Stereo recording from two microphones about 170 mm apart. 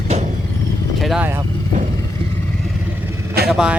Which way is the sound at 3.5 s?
5° right (ahead or behind).